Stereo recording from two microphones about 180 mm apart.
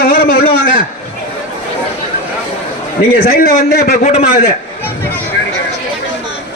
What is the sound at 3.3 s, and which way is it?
Speech, 60° left (ahead or behind).